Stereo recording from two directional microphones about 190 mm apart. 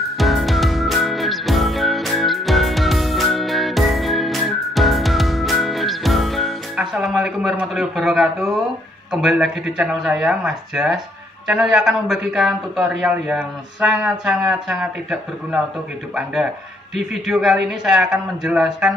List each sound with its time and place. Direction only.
0.2 s music: centre (ahead or behind)
9.1 s a man's voice: 5° right (ahead or behind)
16.9 s a man's voice: centre (ahead or behind)